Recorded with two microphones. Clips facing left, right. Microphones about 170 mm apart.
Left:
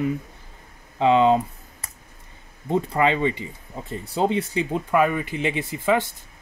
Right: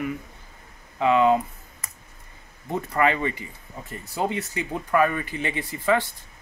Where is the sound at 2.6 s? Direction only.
20° left (ahead or behind).